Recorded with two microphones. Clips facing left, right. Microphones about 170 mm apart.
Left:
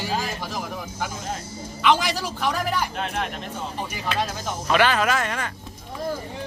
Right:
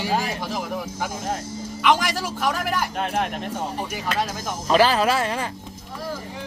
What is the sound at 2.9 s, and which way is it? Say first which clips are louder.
Speech: right 3 dB; 50° right (ahead or behind).